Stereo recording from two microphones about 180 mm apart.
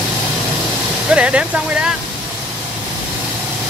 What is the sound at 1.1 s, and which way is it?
Speech, 5° right (ahead or behind).